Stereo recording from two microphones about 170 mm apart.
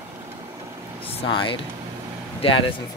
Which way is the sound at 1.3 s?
30° left (ahead or behind).